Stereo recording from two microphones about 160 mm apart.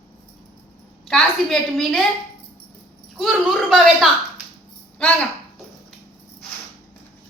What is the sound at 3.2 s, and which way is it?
A woman's voice, centre (ahead or behind).